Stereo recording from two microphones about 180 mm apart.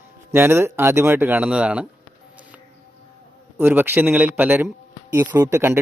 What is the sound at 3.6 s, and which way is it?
Speech, 10° right (ahead or behind).